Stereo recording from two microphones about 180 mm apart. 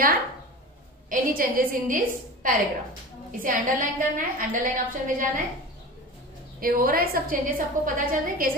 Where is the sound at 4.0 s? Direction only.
50° right (ahead or behind).